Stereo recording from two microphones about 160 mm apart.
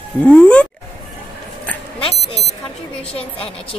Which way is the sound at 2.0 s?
35° left (ahead or behind).